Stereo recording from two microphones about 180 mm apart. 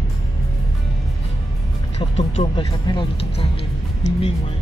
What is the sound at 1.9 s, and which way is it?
Speech, 35° left (ahead or behind).